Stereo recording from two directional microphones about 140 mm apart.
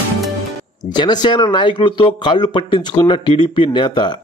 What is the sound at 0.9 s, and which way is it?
A man's voice, 30° left (ahead or behind).